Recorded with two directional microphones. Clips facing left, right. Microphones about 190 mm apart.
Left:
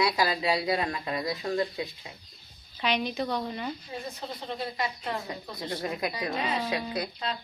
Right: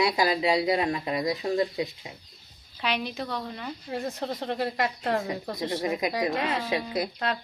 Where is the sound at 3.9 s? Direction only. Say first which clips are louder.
Right 6 dB; 75° right (ahead or behind).